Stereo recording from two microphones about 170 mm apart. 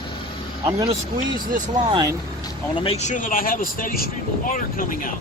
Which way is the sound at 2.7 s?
35° left (ahead or behind).